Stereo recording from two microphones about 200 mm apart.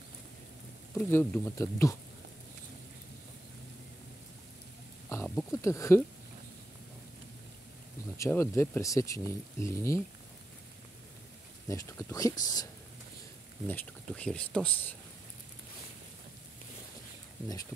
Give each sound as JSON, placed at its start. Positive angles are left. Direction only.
{"t": 0.9, "sound": "speech", "side_deg": 10}
{"t": 5.1, "sound": "a sound", "side_deg": 10}
{"t": 8.2, "sound": "speech", "side_deg": 15}
{"t": 11.7, "sound": "speech", "side_deg": 15}
{"t": 13.7, "sound": "speech", "side_deg": 10}